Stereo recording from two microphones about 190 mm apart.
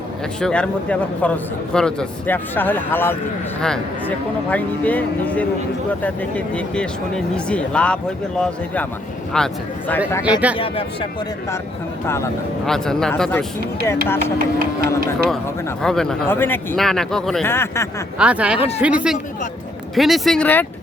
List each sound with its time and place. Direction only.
0.3 s a man's voice: 5° left (ahead or behind)
10.1 s a man's voice: 20° left (ahead or behind)
10.6 s speech: 30° left (ahead or behind)
12.0 s a man's voice: 15° left (ahead or behind)
12.6 s speech: centre (ahead or behind)
14.3 s speech: 50° right (ahead or behind)
15.8 s a man's voice: 5° left (ahead or behind)
18.2 s speech: 5° right (ahead or behind)